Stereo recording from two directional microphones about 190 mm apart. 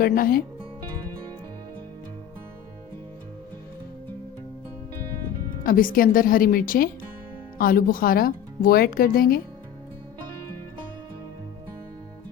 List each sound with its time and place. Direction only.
0.0 s speech: 50° left (ahead or behind)
5.6 s speech: 45° left (ahead or behind)